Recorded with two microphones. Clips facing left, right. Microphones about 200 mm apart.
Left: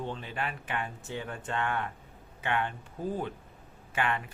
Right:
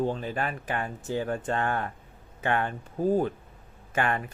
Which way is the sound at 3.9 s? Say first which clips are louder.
Right 4 dB; 45° right (ahead or behind).